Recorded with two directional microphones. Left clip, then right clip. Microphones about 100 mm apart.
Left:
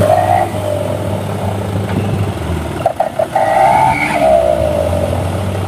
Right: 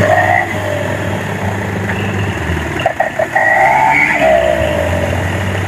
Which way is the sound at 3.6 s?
20° left (ahead or behind).